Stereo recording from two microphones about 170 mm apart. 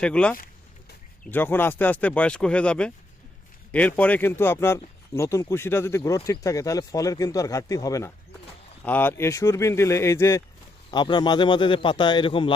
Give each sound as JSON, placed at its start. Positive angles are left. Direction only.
{"t": 0.0, "sound": "speech", "side_deg": 5}